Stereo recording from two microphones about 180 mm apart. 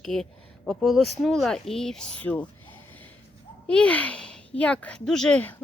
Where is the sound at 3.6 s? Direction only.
5° left (ahead or behind).